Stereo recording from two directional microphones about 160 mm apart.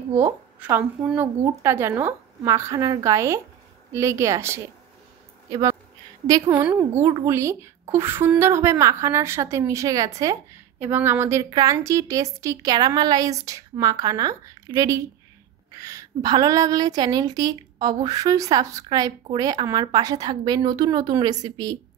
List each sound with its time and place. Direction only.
0.1 s speech: 15° right (ahead or behind)
6.2 s a woman's voice: 25° right (ahead or behind)